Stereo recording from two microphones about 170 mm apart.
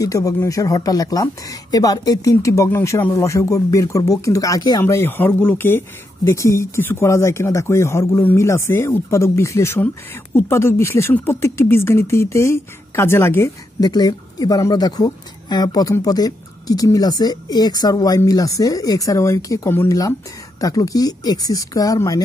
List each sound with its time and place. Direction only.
0.0 s speech: 20° left (ahead or behind)